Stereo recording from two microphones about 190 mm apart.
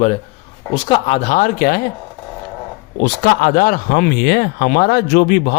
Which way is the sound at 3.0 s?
55° left (ahead or behind).